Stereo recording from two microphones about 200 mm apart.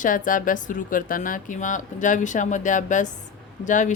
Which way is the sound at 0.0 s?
40° left (ahead or behind).